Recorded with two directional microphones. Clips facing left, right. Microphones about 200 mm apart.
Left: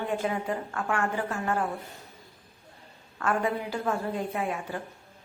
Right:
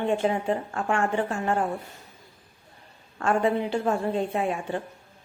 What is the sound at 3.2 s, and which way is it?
A woman's voice, 30° right (ahead or behind).